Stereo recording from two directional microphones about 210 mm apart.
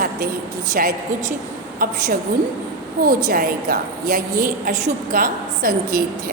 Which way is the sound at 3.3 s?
45° right (ahead or behind).